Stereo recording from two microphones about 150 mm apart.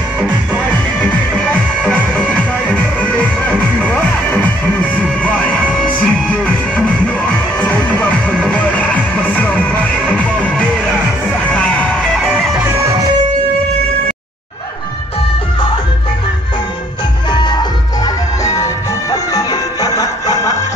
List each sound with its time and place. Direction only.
0.9 s music: 5° left (ahead or behind)
12.3 s music: 10° right (ahead or behind)
17.3 s music: 30° left (ahead or behind)